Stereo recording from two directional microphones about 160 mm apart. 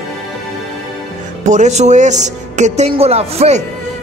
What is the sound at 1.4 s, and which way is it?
Speech, 45° right (ahead or behind).